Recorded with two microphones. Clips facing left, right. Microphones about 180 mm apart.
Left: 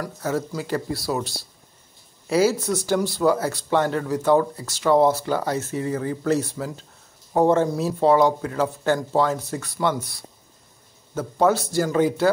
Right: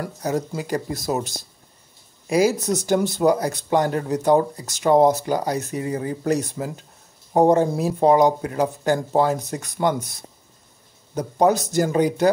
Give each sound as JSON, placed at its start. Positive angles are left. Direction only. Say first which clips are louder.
{"t": 0.0, "sound": "speech", "louder": "right 1 dB", "side_deg": -20}